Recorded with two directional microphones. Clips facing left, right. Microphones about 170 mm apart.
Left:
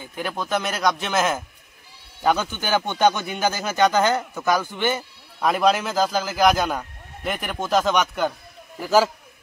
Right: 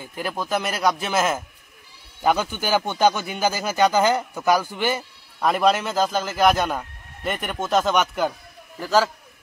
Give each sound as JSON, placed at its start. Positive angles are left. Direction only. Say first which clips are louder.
{"t": 0.0, "sound": "speech", "louder": "even", "side_deg": 0}
{"t": 8.7, "sound": "a man's voice", "louder": "left 2 dB", "side_deg": 10}